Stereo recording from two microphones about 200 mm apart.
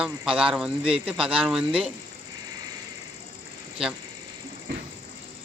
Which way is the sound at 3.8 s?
5° right (ahead or behind).